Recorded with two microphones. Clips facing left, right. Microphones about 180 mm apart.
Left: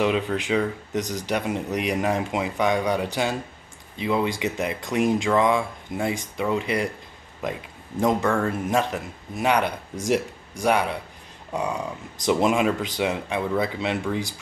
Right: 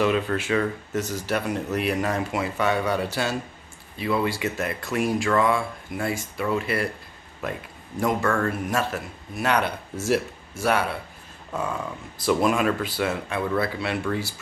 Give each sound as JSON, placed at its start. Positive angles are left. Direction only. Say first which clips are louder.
{"t": 0.0, "sound": "speech", "louder": "even", "side_deg": 15}